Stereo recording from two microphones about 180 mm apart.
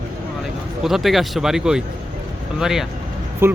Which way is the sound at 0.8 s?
Centre (ahead or behind).